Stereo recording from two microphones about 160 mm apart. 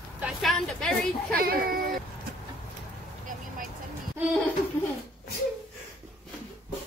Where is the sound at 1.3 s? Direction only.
65° right (ahead or behind).